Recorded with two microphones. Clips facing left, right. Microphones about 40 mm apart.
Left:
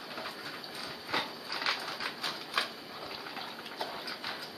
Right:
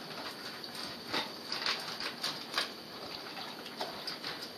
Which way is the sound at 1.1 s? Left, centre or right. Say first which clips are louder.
Left 3 dB; centre.